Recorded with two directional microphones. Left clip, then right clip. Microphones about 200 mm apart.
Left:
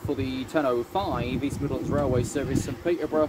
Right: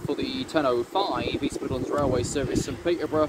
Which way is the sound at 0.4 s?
50° left (ahead or behind).